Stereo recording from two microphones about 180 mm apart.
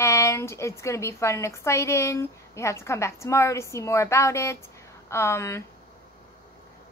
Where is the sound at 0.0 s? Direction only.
15° left (ahead or behind).